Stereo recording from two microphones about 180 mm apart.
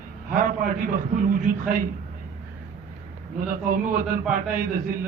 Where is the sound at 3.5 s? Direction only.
50° right (ahead or behind).